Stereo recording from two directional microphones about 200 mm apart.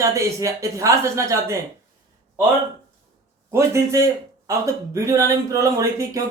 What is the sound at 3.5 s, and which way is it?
Speech, 15° right (ahead or behind).